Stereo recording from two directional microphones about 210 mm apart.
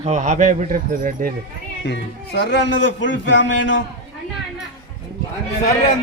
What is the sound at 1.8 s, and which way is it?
A man's voice, 55° left (ahead or behind).